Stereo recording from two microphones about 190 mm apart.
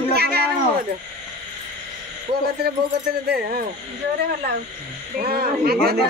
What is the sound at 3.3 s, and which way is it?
Speech, 50° right (ahead or behind).